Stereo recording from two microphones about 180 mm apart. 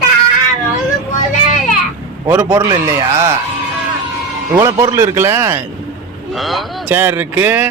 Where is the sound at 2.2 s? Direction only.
15° right (ahead or behind).